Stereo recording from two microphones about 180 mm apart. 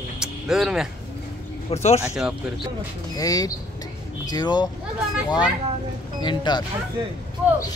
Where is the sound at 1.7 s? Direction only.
35° left (ahead or behind).